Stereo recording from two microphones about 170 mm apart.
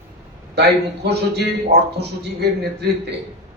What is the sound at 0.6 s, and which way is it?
A man's voice, 75° right (ahead or behind).